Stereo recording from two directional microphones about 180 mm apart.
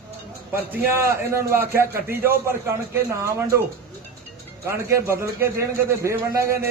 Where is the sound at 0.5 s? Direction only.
15° right (ahead or behind).